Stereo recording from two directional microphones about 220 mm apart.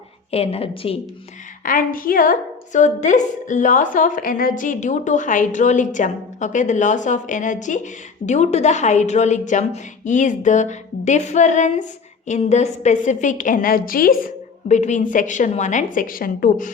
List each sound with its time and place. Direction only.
0.3 s a woman's voice: 25° left (ahead or behind)
1.6 s a woman's voice: 40° left (ahead or behind)